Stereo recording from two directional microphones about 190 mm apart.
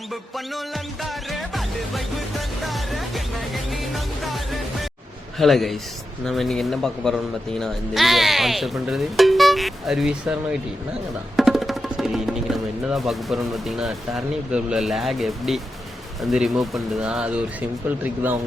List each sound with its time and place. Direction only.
0.1 s music: centre (ahead or behind)
5.4 s a man's voice: centre (ahead or behind)